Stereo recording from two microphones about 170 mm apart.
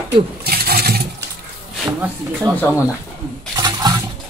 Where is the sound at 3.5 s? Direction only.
20° right (ahead or behind).